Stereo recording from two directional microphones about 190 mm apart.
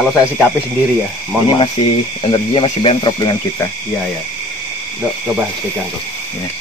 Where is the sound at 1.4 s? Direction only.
25° left (ahead or behind).